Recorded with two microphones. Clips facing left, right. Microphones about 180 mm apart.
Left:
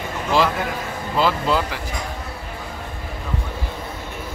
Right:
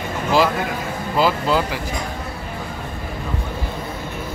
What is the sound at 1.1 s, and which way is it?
Speech, 5° right (ahead or behind).